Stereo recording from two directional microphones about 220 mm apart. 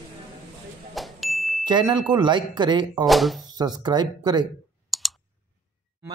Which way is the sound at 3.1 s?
Centre (ahead or behind).